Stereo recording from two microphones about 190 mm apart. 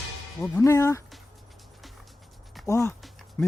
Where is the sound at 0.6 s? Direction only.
15° left (ahead or behind).